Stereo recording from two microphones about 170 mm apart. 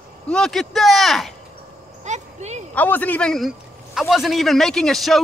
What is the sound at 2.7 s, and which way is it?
Speech, 10° left (ahead or behind).